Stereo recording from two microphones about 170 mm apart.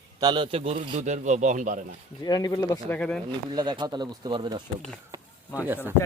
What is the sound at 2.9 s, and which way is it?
Speech, 5° left (ahead or behind).